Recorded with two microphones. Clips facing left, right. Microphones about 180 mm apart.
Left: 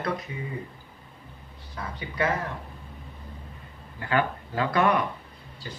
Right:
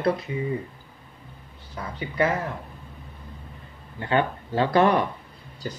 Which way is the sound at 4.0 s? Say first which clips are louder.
Right 2 dB; 25° right (ahead or behind).